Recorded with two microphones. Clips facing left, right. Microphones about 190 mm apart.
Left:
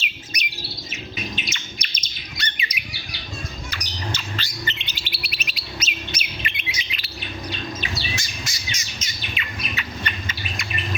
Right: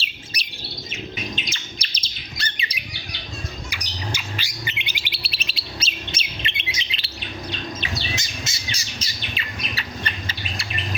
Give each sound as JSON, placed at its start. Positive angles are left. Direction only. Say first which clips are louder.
{"t": 0.3, "sound": "chirp", "louder": "left 4 dB", "side_deg": -30}
{"t": 1.5, "sound": "bird", "louder": "even", "side_deg": -30}
{"t": 3.7, "sound": "bird", "louder": "left 2 dB", "side_deg": -10}
{"t": 5.2, "sound": "bird", "louder": "left 1 dB", "side_deg": -30}
{"t": 8.1, "sound": "bird", "louder": "right 1 dB", "side_deg": -20}
{"t": 8.7, "sound": "bird", "louder": "right 1 dB", "side_deg": -35}
{"t": 9.7, "sound": "squawk", "louder": "left 1 dB", "side_deg": -35}